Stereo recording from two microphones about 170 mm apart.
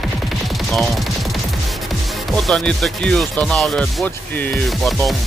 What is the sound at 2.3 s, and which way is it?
Speech, centre (ahead or behind).